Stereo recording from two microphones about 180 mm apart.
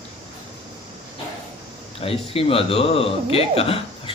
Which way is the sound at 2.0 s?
30° left (ahead or behind).